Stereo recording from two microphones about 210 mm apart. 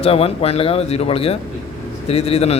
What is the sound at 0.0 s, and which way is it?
A man's voice, 30° left (ahead or behind).